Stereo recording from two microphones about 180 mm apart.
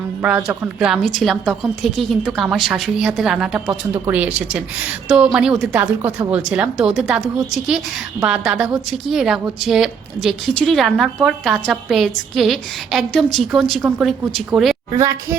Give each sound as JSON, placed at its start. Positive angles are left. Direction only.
{"t": 0.2, "sound": "a woman's voice", "side_deg": -5}
{"t": 14.9, "sound": "speech", "side_deg": -15}